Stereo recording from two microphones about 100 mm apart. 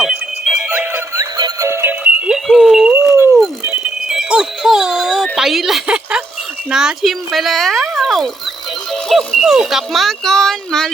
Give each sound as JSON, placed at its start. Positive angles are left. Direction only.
{"t": 0.0, "sound": "music", "side_deg": -5}
{"t": 0.7, "sound": "music", "side_deg": -20}
{"t": 1.1, "sound": "music", "side_deg": -40}
{"t": 1.6, "sound": "music", "side_deg": -25}
{"t": 2.2, "sound": "a sound", "side_deg": -5}
{"t": 2.9, "sound": "dog", "side_deg": -25}
{"t": 4.1, "sound": "music", "side_deg": -5}
{"t": 5.4, "sound": "a woman's voice", "side_deg": 0}